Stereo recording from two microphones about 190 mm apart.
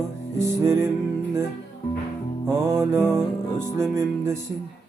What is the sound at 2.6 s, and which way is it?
Music, 15° right (ahead or behind).